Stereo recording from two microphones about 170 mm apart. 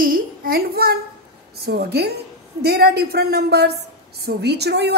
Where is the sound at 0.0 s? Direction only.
60° right (ahead or behind).